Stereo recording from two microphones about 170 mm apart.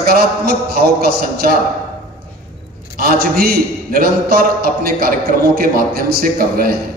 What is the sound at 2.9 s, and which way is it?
A man's voice, 60° right (ahead or behind).